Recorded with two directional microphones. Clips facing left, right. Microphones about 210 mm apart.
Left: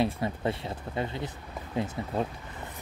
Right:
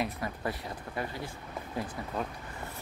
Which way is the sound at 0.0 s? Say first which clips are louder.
Left 6 dB; 25° left (ahead or behind).